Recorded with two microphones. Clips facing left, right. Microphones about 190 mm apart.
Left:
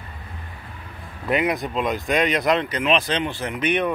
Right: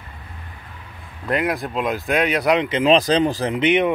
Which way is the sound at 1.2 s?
Centre (ahead or behind).